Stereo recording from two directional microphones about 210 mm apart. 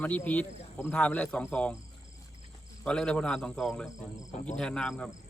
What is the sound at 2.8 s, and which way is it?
Speech, 5° left (ahead or behind).